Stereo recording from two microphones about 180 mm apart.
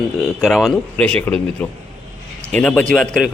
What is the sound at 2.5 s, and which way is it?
Speech, 5° left (ahead or behind).